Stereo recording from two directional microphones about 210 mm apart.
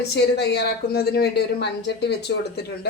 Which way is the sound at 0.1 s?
55° left (ahead or behind).